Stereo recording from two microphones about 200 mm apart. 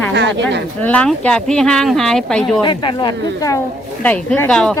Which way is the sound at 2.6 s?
20° left (ahead or behind).